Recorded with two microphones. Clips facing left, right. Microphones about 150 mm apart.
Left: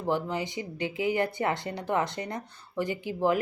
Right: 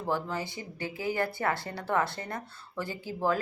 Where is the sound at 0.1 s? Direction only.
20° left (ahead or behind).